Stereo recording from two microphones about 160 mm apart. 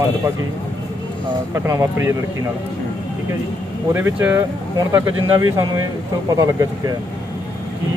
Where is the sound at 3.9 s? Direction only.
15° right (ahead or behind).